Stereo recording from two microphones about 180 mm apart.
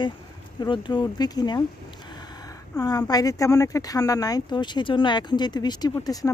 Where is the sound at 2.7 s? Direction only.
20° left (ahead or behind).